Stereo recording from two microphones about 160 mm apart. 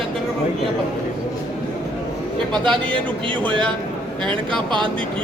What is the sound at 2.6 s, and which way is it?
Speech, 30° right (ahead or behind).